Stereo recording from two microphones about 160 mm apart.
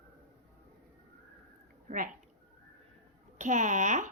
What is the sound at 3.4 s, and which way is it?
Speech, 50° right (ahead or behind).